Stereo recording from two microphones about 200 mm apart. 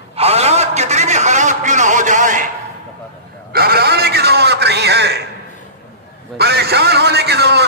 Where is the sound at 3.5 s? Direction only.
50° right (ahead or behind).